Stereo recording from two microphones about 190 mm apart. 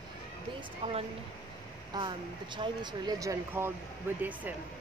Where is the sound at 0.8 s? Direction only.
30° right (ahead or behind).